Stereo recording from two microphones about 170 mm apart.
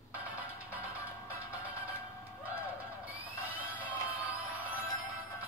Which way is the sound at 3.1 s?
10° right (ahead or behind).